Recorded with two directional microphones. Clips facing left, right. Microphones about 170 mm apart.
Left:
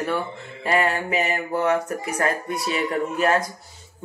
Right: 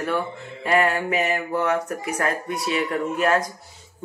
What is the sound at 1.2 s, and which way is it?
Mantra, 30° left (ahead or behind).